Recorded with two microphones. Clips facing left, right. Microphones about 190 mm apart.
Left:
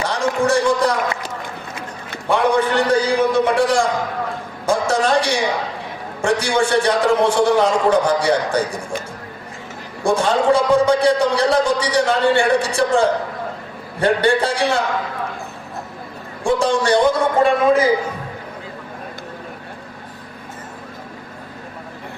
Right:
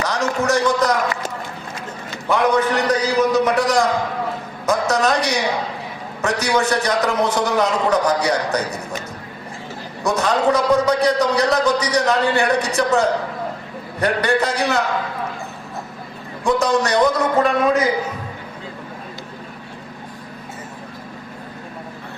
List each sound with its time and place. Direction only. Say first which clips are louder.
0.0 s a sound: left 2 dB; 30° left (ahead or behind)
2.3 s a man's voice: left 1 dB; 30° left (ahead or behind)
10.0 s a man's voice: left 2 dB; 30° left (ahead or behind)
16.4 s a man's voice: even; 30° left (ahead or behind)